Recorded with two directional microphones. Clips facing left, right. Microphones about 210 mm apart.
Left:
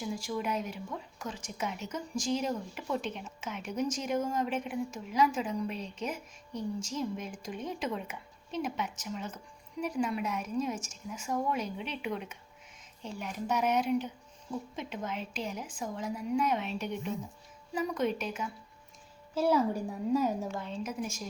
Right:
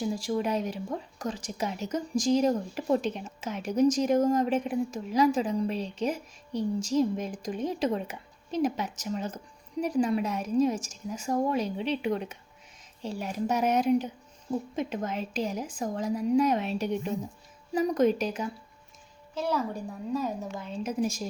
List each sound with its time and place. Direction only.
0.0 s speech: 35° right (ahead or behind)
19.3 s a woman's voice: 5° left (ahead or behind)
20.5 s a woman's voice: centre (ahead or behind)
20.8 s speech: 35° right (ahead or behind)